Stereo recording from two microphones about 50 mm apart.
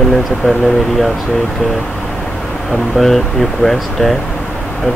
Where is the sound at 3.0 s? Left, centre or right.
Centre.